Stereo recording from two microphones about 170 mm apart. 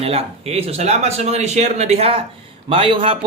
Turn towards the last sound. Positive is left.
turn(degrees=-30)  # may be behind; listen again after turning